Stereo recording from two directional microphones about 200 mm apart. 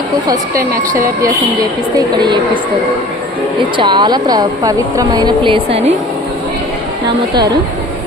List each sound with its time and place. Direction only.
2.0 s a woman's voice: 20° right (ahead or behind)
3.8 s a woman's voice: 20° right (ahead or behind)